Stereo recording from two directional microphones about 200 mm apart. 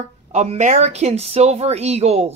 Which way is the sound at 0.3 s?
35° right (ahead or behind).